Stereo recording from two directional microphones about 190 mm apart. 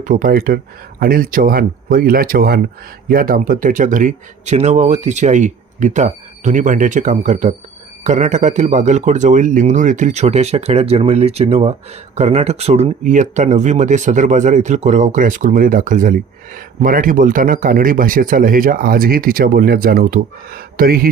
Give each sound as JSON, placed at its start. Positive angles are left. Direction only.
{"t": 0.0, "sound": "speech", "side_deg": -45}